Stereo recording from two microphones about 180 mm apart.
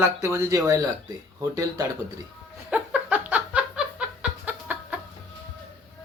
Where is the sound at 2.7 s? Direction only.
10° right (ahead or behind).